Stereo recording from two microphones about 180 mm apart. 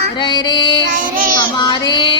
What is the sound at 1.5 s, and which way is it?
Female singing, 25° left (ahead or behind).